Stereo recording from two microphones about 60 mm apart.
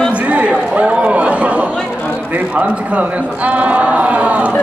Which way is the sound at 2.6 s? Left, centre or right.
Right.